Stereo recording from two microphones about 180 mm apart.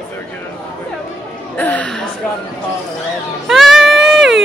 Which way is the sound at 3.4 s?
Centre (ahead or behind).